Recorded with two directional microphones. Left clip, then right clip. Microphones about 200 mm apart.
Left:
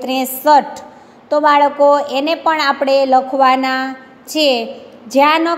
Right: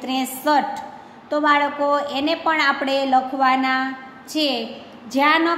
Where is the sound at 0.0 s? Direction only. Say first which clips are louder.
Left 7 dB; 30° left (ahead or behind).